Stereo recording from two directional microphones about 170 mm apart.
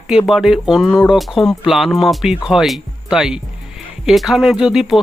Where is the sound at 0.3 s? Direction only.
Centre (ahead or behind).